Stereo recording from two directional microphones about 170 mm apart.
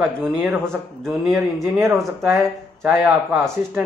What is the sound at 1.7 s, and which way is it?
Speech, 15° right (ahead or behind).